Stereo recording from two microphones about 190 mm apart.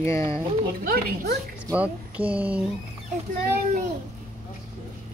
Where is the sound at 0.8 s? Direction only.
50° right (ahead or behind).